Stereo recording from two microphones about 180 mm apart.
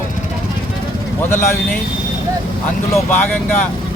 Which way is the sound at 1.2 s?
10° left (ahead or behind).